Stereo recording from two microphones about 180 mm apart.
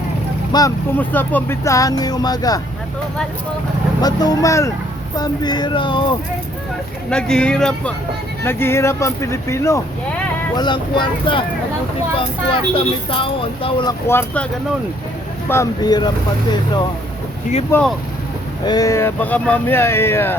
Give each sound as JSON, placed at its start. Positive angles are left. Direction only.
{"t": 0.5, "sound": "speech", "side_deg": 25}
{"t": 0.9, "sound": "speech", "side_deg": 10}
{"t": 4.0, "sound": "speech", "side_deg": 20}
{"t": 7.1, "sound": "speech", "side_deg": 5}
{"t": 14.1, "sound": "speech", "side_deg": 10}
{"t": 15.4, "sound": "speech", "side_deg": 20}
{"t": 17.7, "sound": "speech", "side_deg": 10}
{"t": 18.6, "sound": "speech", "side_deg": 20}